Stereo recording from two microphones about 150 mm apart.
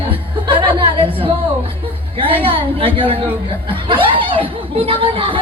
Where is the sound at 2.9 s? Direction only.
35° right (ahead or behind).